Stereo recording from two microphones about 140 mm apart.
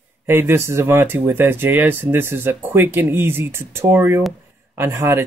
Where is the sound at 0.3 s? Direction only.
15° right (ahead or behind).